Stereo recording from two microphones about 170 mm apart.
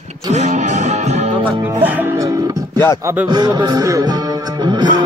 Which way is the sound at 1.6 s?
10° right (ahead or behind).